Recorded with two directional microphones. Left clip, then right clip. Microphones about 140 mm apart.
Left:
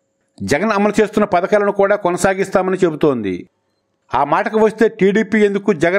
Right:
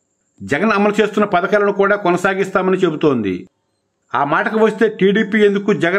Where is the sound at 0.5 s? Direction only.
35° left (ahead or behind).